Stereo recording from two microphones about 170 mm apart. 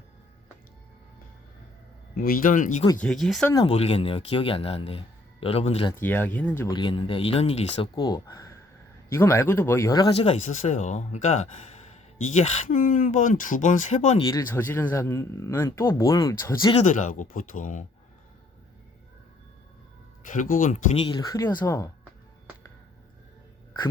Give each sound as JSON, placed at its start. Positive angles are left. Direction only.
{"t": 2.1, "sound": "speech", "side_deg": 60}
{"t": 3.0, "sound": "speech", "side_deg": 0}
{"t": 3.6, "sound": "speech", "side_deg": 35}
{"t": 5.9, "sound": "speech", "side_deg": 10}
{"t": 6.7, "sound": "speech", "side_deg": 30}
{"t": 7.9, "sound": "speech", "side_deg": 20}
{"t": 10.1, "sound": "speech", "side_deg": 40}
{"t": 14.3, "sound": "speech", "side_deg": 15}
{"t": 16.8, "sound": "speech", "side_deg": 50}
{"t": 20.2, "sound": "speech", "side_deg": 50}
{"t": 21.2, "sound": "speech", "side_deg": 20}